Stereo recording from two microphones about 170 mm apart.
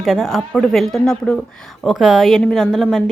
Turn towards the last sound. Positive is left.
turn(degrees=0)  # may be behind; listen again after turning